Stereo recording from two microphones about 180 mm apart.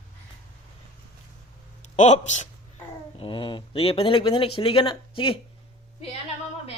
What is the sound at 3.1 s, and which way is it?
Speech, 30° left (ahead or behind).